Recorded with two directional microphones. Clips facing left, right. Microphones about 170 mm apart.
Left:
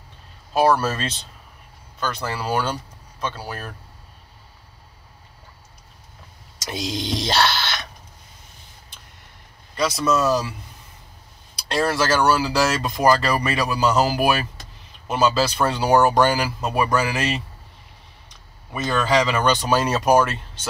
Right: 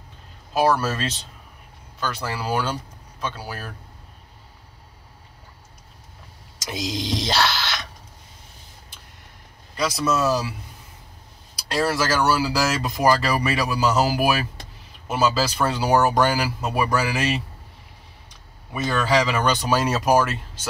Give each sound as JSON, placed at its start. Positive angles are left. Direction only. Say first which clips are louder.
{"t": 0.7, "sound": "speech", "louder": "left 1 dB", "side_deg": -5}
{"t": 2.0, "sound": "speech", "louder": "left 1 dB", "side_deg": -10}
{"t": 7.0, "sound": "grunt", "louder": "left 2 dB", "side_deg": 0}
{"t": 9.8, "sound": "speech", "louder": "left 2 dB", "side_deg": -5}
{"t": 11.7, "sound": "speech", "louder": "left 2 dB", "side_deg": -5}
{"t": 18.7, "sound": "speech", "louder": "left 1 dB", "side_deg": -5}